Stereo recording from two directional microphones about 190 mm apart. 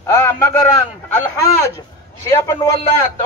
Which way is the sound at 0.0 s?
15° left (ahead or behind).